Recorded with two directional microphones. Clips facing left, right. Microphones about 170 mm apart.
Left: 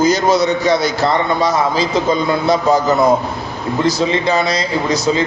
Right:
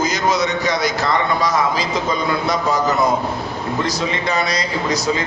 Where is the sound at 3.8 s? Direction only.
30° left (ahead or behind).